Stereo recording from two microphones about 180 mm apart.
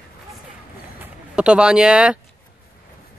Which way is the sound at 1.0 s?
5° right (ahead or behind).